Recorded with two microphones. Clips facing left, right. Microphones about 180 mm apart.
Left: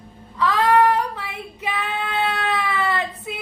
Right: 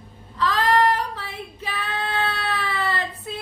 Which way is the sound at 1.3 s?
15° left (ahead or behind).